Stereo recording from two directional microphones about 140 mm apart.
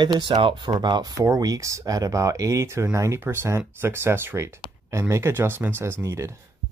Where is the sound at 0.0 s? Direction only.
30° right (ahead or behind).